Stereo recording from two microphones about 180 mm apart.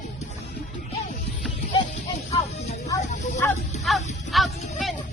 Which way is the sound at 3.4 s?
10° left (ahead or behind).